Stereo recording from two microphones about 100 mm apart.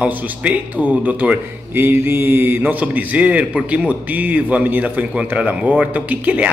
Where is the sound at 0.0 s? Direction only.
15° right (ahead or behind).